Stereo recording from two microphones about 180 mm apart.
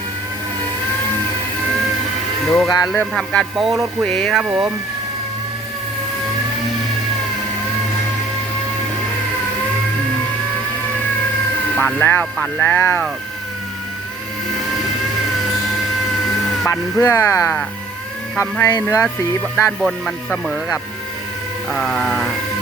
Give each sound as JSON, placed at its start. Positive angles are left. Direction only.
{"t": 2.5, "sound": "music", "side_deg": 0}
{"t": 4.4, "sound": "speech", "side_deg": -5}
{"t": 11.8, "sound": "speech", "side_deg": 10}
{"t": 16.6, "sound": "speech", "side_deg": 15}
{"t": 19.8, "sound": "music", "side_deg": 0}